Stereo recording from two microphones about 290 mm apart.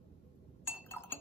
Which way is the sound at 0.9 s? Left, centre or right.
Centre.